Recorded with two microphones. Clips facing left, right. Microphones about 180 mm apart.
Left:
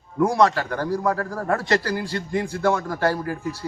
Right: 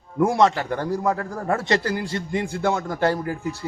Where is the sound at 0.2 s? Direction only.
25° right (ahead or behind).